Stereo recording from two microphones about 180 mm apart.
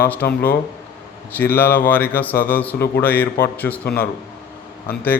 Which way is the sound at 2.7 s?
60° left (ahead or behind).